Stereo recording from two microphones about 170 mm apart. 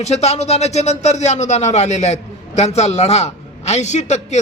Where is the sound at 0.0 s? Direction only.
40° left (ahead or behind).